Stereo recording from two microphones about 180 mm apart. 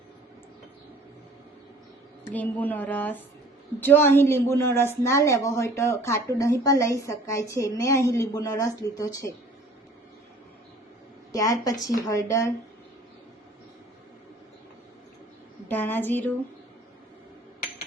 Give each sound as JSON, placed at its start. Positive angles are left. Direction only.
{"t": 2.3, "sound": "a woman's voice", "side_deg": 10}
{"t": 11.3, "sound": "a woman's voice", "side_deg": 20}
{"t": 15.7, "sound": "a woman's voice", "side_deg": 10}